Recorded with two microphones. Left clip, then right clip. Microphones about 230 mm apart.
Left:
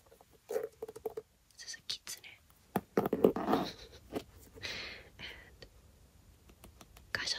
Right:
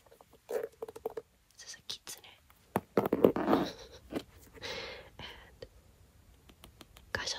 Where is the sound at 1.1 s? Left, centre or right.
Centre.